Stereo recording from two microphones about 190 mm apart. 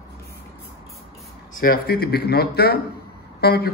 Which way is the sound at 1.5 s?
50° left (ahead or behind).